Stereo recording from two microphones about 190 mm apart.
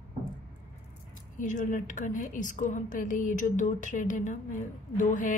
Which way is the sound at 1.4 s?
40° left (ahead or behind).